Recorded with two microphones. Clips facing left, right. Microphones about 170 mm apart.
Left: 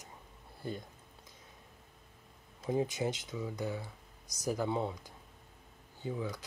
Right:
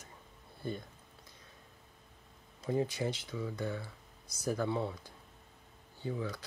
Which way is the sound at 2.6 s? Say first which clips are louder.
Left 1 dB; 20° left (ahead or behind).